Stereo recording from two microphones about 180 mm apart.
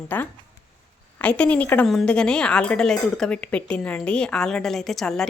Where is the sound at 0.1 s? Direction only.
10° left (ahead or behind).